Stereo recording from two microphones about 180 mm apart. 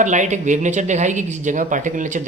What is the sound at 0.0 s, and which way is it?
Speech, 40° right (ahead or behind).